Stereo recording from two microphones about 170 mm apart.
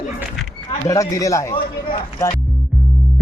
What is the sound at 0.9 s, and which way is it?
Speech, 20° left (ahead or behind).